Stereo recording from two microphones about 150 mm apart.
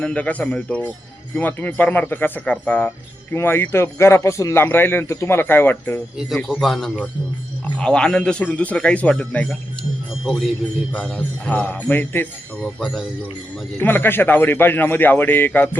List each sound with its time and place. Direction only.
0.0 s a man's voice: 10° left (ahead or behind)
6.1 s a man's voice: centre (ahead or behind)
12.8 s speech: centre (ahead or behind)
13.7 s a man's voice: 15° left (ahead or behind)